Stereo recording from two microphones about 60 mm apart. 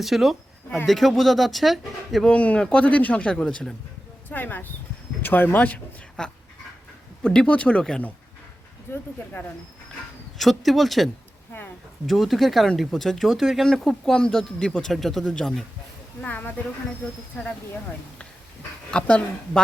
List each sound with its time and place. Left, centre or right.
0.0 s speech: centre
2.2 s speech: left
4.3 s speech: left
6.2 s speech: centre
10.3 s speech: centre
13.7 s speech: centre
16.2 s speech: left
18.9 s speech: centre